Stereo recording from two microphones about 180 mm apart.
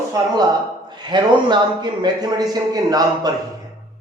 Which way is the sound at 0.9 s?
25° right (ahead or behind).